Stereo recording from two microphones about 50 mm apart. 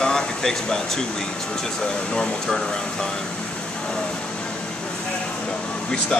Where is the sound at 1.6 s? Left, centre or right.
Centre.